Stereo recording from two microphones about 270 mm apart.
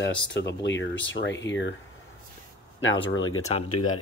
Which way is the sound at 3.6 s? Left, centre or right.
Left.